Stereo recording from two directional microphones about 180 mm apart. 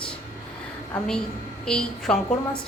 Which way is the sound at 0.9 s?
5° left (ahead or behind).